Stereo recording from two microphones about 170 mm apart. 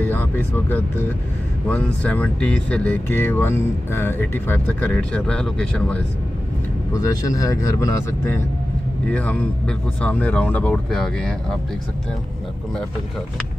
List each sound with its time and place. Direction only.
0.0 s speech: 10° left (ahead or behind)
6.9 s speech: 20° left (ahead or behind)
9.1 s speech: 10° left (ahead or behind)